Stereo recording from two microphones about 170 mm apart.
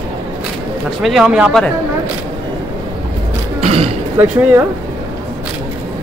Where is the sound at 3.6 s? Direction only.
40° right (ahead or behind).